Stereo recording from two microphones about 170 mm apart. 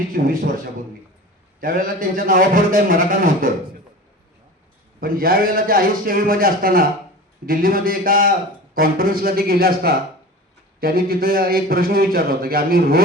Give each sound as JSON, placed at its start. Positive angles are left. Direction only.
{"t": 0.1, "sound": "a man's voice", "side_deg": -55}
{"t": 1.6, "sound": "a man's voice", "side_deg": -55}
{"t": 4.9, "sound": "a man's voice", "side_deg": -60}